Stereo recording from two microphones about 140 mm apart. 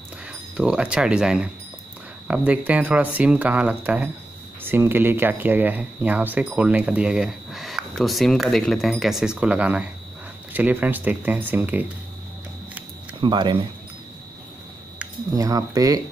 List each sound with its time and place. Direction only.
0.6 s speech: 5° right (ahead or behind)
13.2 s speech: 35° right (ahead or behind)
15.3 s speech: 25° right (ahead or behind)